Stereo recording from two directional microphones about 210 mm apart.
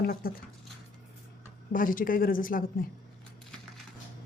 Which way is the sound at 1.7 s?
40° left (ahead or behind).